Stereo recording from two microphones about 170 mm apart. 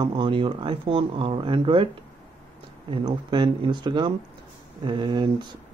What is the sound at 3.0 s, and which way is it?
Speech, 25° right (ahead or behind).